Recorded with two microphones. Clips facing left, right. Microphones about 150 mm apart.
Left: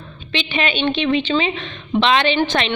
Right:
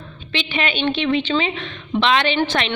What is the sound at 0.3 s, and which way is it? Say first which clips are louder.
A woman's voice: left 2 dB; 20° left (ahead or behind).